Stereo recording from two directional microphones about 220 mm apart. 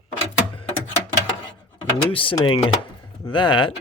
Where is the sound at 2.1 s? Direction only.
25° left (ahead or behind).